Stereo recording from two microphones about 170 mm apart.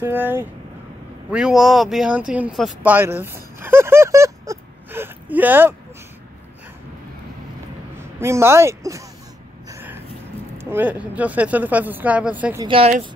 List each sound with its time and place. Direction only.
0.0 s speech: 10° right (ahead or behind)
8.0 s speech: 15° right (ahead or behind)
9.7 s a sound: 15° right (ahead or behind)
10.6 s speech: 10° right (ahead or behind)
12.6 s speech: 35° right (ahead or behind)